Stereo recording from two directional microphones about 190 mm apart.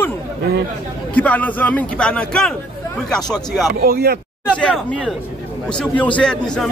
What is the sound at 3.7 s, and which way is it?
Speech, 55° right (ahead or behind).